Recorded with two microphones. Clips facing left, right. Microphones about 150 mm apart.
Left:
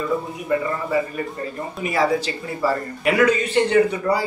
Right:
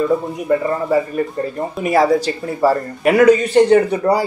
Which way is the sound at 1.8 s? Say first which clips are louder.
Right 6 dB; 40° right (ahead or behind).